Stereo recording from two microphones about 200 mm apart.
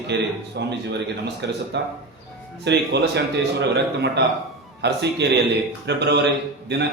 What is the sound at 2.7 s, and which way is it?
A man's voice, 60° right (ahead or behind).